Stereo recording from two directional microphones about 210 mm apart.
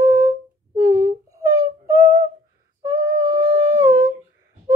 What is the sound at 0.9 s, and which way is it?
Humming, 15° right (ahead or behind).